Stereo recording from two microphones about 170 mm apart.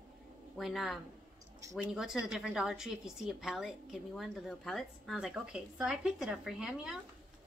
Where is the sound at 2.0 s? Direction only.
Centre (ahead or behind).